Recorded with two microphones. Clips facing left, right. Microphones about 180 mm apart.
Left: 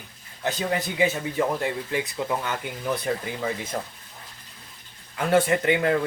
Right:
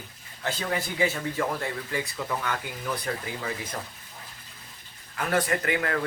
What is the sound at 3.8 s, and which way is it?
Speech, 45° left (ahead or behind).